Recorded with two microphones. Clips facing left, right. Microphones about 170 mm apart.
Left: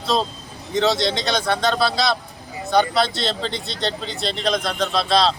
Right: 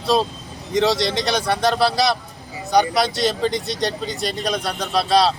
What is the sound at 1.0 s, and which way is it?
Speech, 10° right (ahead or behind).